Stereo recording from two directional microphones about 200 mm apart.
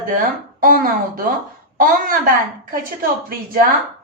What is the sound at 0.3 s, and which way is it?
A woman's voice, 45° right (ahead or behind).